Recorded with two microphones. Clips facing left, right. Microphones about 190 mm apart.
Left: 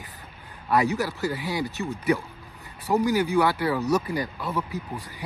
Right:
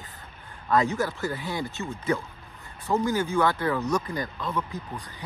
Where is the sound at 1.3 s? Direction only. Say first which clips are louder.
Left 3 dB; 15° left (ahead or behind).